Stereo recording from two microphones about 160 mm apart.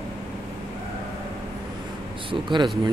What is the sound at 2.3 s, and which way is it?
Speech, 30° right (ahead or behind).